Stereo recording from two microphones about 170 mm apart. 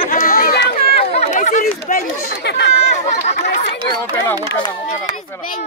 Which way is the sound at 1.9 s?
75° left (ahead or behind).